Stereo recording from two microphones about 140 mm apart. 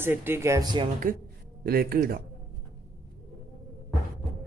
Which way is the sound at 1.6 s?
90° right.